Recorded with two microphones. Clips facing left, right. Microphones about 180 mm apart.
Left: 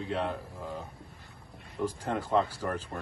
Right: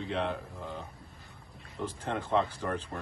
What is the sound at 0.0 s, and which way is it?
Speech, centre (ahead or behind).